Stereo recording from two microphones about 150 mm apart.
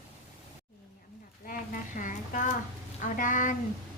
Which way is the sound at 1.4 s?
70° left (ahead or behind).